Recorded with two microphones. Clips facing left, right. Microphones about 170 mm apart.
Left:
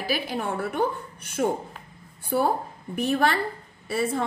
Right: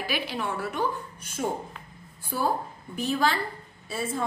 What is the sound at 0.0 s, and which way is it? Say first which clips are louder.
A woman's voice: left 3 dB; 45° left (ahead or behind).